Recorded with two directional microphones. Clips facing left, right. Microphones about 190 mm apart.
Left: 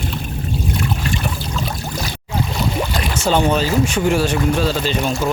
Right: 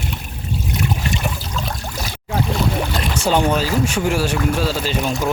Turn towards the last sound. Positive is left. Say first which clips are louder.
# left 1 dB
turn(degrees=0)  # may be behind; listen again after turning